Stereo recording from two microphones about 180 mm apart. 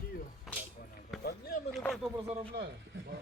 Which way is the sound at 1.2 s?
60° left (ahead or behind).